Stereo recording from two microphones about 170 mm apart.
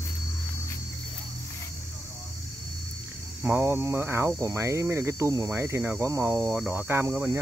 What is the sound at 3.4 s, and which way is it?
Speech, 10° right (ahead or behind).